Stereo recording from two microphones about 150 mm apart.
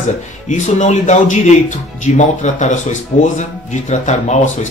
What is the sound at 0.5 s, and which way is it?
Speech, 55° left (ahead or behind).